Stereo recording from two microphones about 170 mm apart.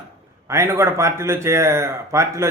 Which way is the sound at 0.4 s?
15° right (ahead or behind).